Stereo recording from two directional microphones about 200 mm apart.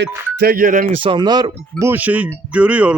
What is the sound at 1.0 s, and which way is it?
Speech, 25° right (ahead or behind).